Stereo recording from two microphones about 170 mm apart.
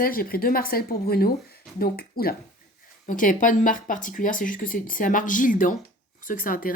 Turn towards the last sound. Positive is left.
turn(degrees=55)  # may be behind; listen again after turning